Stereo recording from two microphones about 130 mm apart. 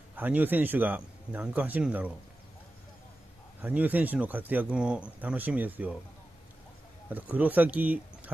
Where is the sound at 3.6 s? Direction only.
10° right (ahead or behind).